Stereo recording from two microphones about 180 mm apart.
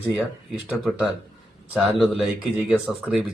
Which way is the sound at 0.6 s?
Centre (ahead or behind).